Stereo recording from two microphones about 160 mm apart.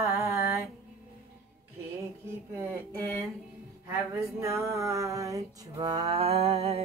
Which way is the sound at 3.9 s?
15° right (ahead or behind).